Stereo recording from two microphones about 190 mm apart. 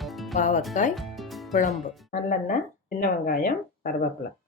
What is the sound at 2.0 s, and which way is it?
Speech, 40° left (ahead or behind).